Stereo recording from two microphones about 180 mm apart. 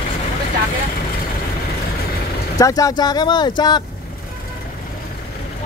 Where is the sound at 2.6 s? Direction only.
20° left (ahead or behind).